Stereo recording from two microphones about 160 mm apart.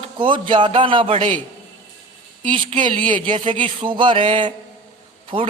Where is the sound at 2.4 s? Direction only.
30° right (ahead or behind).